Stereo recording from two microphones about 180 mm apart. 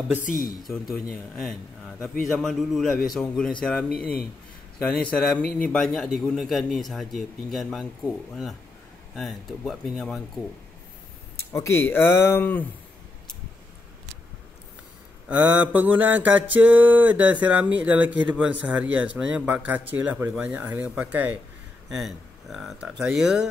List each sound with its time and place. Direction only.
0.2 s speech: 50° left (ahead or behind)
0.7 s a man's voice: centre (ahead or behind)
4.8 s a man's voice: 5° left (ahead or behind)
11.5 s speech: 15° left (ahead or behind)
15.2 s mantra: 10° right (ahead or behind)
21.8 s a man's voice: centre (ahead or behind)